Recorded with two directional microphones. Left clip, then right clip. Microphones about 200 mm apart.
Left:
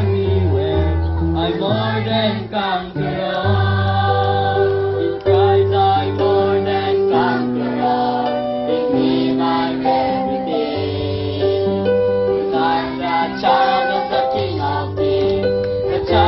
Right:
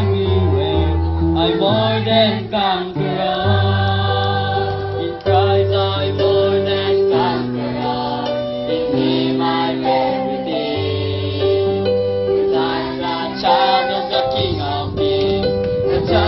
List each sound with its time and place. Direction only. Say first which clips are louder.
9.2 s music: even; 50° left (ahead or behind)
13.5 s music: right 1 dB; 40° left (ahead or behind)